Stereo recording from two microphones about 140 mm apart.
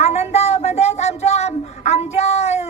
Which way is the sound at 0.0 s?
50° left (ahead or behind).